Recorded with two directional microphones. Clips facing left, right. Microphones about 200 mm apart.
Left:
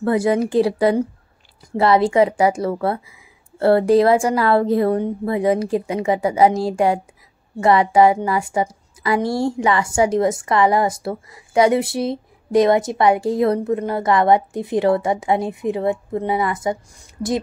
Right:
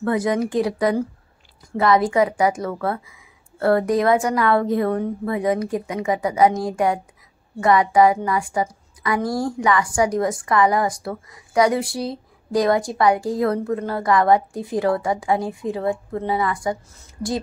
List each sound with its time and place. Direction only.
0.0 s a woman's voice: 30° left (ahead or behind)